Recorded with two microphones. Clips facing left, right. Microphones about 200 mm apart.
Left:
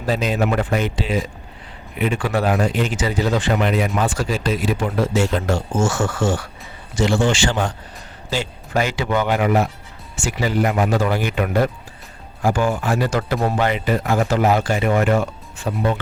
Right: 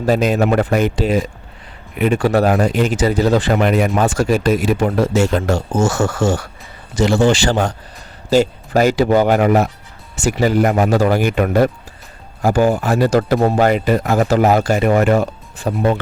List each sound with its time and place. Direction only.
0.0 s speech: 45° right (ahead or behind)